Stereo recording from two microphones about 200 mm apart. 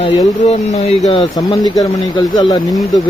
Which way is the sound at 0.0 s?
30° left (ahead or behind).